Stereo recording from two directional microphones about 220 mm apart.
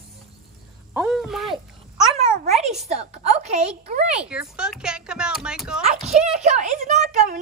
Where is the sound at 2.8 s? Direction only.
30° right (ahead or behind).